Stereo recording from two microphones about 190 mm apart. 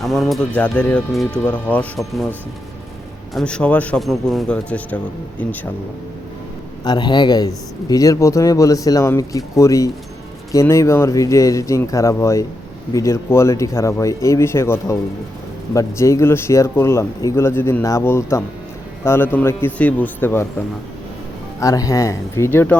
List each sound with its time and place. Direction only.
0.0 s speech: centre (ahead or behind)
3.3 s speech: 5° left (ahead or behind)
6.8 s speech: 20° left (ahead or behind)
21.6 s speech: 20° left (ahead or behind)